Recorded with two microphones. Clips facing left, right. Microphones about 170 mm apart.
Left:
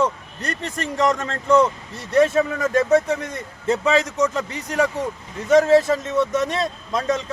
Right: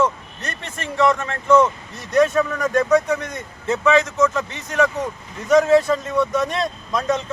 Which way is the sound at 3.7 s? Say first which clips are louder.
Right 2 dB; 35° left (ahead or behind).